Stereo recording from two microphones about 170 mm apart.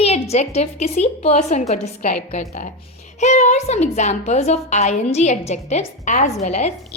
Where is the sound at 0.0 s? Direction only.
40° left (ahead or behind).